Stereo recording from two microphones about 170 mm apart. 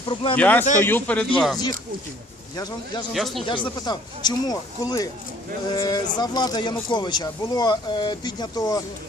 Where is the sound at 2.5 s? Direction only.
25° left (ahead or behind).